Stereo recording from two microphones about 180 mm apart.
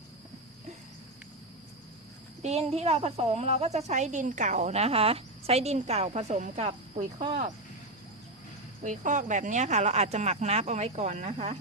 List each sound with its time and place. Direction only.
2.4 s speech: 35° right (ahead or behind)
8.8 s speech: 45° right (ahead or behind)